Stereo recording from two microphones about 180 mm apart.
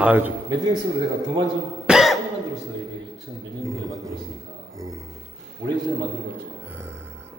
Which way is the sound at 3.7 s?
15° right (ahead or behind).